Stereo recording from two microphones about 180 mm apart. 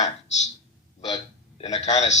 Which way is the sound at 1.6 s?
35° left (ahead or behind).